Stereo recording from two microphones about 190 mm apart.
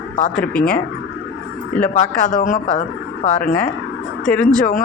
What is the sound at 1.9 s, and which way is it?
Speech, 40° left (ahead or behind).